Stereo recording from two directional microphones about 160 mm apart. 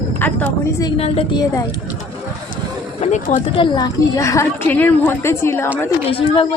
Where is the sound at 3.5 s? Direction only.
30° left (ahead or behind).